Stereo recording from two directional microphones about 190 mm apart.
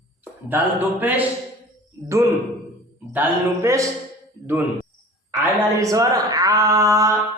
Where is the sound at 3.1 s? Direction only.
10° right (ahead or behind).